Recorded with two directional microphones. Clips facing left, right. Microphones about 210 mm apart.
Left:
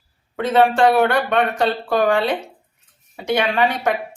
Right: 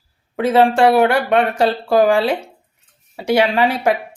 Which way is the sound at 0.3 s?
25° right (ahead or behind).